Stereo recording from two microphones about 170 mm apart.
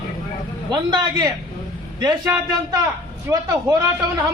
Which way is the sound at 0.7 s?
25° right (ahead or behind).